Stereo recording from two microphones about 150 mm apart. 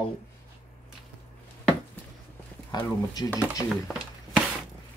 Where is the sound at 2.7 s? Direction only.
25° left (ahead or behind).